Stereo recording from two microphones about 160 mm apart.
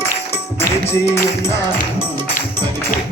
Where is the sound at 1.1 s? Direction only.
15° left (ahead or behind).